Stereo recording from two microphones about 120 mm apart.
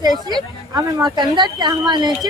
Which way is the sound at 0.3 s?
35° right (ahead or behind).